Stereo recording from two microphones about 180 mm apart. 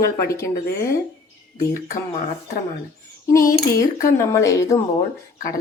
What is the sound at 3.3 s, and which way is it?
Speech, 15° left (ahead or behind).